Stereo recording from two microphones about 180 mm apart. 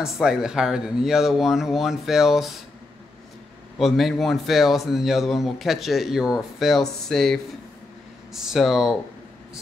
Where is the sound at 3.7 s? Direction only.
Centre (ahead or behind).